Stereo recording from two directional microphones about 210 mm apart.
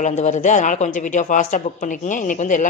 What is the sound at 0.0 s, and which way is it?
Speech, 35° left (ahead or behind).